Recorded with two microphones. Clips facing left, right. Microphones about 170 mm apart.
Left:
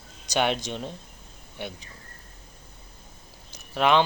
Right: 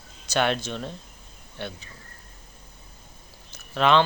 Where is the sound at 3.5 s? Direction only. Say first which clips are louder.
Right 1 dB; 15° left (ahead or behind).